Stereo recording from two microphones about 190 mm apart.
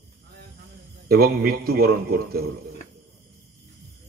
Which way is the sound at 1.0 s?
55° right (ahead or behind).